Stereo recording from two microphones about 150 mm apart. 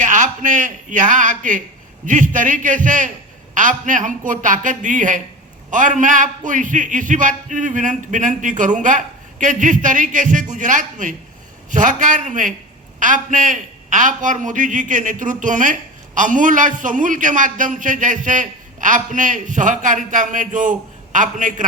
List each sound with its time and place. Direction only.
0.0 s a man's voice: 55° right (ahead or behind)